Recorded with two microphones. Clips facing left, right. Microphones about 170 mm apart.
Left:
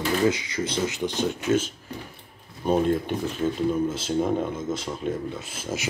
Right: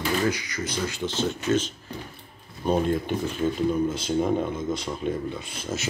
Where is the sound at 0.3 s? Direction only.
25° left (ahead or behind).